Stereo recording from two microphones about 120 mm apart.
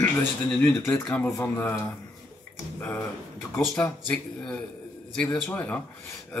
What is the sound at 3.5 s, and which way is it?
Speech, 10° left (ahead or behind).